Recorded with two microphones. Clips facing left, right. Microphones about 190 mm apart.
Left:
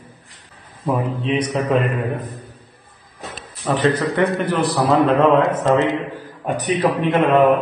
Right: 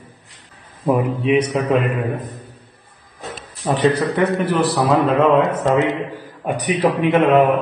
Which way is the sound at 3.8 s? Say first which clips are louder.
Right 1 dB; 10° right (ahead or behind).